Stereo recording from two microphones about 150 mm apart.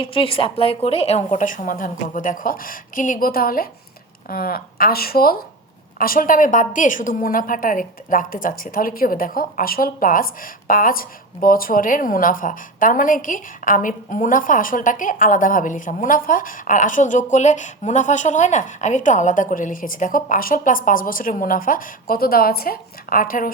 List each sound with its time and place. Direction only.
0.0 s a woman's voice: 35° left (ahead or behind); by 5.4 s 90° left
6.0 s a woman's voice: 70° left (ahead or behind)